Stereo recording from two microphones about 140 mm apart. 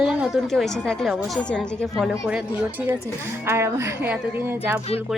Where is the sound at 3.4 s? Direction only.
20° right (ahead or behind).